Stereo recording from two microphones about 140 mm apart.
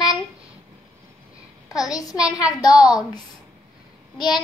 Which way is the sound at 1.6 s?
25° left (ahead or behind).